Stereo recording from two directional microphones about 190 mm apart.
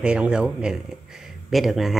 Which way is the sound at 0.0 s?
5° right (ahead or behind).